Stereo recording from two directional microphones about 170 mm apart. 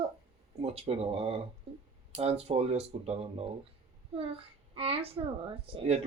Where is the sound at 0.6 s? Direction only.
35° right (ahead or behind).